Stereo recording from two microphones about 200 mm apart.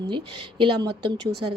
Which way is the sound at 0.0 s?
25° right (ahead or behind).